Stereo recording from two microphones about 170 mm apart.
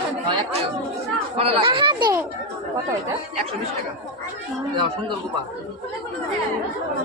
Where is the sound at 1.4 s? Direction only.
35° right (ahead or behind).